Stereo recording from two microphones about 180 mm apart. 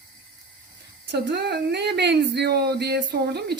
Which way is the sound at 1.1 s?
70° right (ahead or behind).